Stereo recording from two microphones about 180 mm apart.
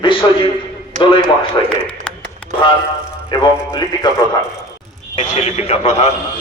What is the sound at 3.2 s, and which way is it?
Speech, 25° left (ahead or behind).